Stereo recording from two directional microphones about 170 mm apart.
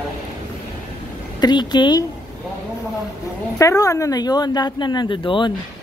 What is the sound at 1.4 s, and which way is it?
Speech, 25° left (ahead or behind).